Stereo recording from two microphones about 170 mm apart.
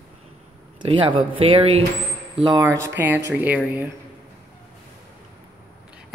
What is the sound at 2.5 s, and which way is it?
Speech, 15° right (ahead or behind).